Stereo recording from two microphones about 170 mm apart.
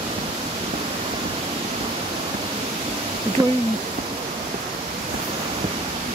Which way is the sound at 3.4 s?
20° right (ahead or behind).